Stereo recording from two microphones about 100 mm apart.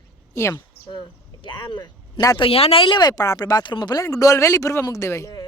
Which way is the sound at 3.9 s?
35° left (ahead or behind).